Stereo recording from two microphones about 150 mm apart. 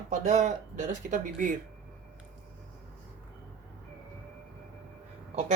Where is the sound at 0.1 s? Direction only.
55° right (ahead or behind).